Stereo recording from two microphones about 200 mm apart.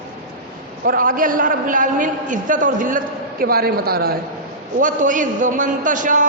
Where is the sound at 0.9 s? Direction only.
45° right (ahead or behind).